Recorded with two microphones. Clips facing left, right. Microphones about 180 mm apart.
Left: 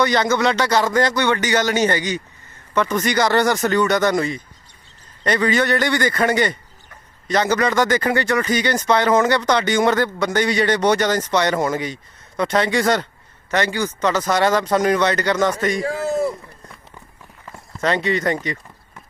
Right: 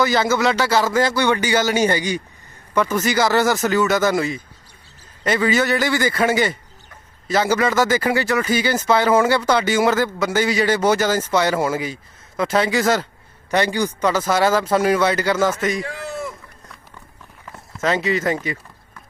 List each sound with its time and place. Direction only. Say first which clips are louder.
0.0 s speech: even; 5° right (ahead or behind)
15.8 s a sound: left 7 dB; 40° left (ahead or behind)
17.7 s speech: even; 5° right (ahead or behind)